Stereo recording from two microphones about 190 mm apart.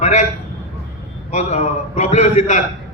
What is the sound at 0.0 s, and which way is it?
Speech, 40° left (ahead or behind).